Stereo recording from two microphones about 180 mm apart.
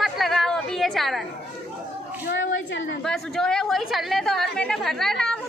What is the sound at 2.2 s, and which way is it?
Speech, 90° left.